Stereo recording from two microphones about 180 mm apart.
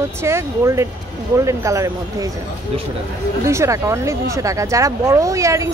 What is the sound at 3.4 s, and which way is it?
Speech, 15° right (ahead or behind).